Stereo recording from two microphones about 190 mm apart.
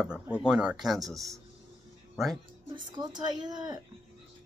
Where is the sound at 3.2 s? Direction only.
20° right (ahead or behind).